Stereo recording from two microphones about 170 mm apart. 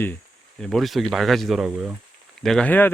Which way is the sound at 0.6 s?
Centre (ahead or behind).